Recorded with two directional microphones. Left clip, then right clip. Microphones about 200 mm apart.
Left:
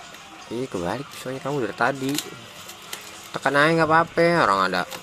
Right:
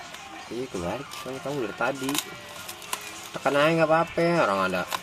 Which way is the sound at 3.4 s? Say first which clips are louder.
Left 3 dB; 25° left (ahead or behind).